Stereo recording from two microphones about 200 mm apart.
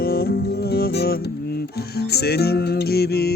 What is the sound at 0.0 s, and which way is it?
Music, 50° left (ahead or behind).